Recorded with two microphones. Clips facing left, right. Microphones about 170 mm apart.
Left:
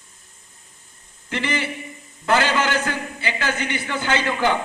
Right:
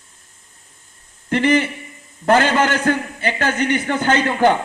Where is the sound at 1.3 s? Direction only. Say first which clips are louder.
Right 9 dB; 50° right (ahead or behind).